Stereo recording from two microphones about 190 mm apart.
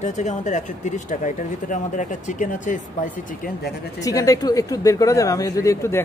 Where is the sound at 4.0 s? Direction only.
20° left (ahead or behind).